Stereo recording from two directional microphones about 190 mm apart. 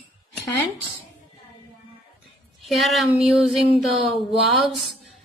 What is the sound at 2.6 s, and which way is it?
A woman's voice, centre (ahead or behind).